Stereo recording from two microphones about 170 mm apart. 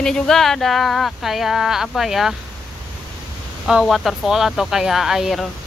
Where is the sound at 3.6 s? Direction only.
Centre (ahead or behind).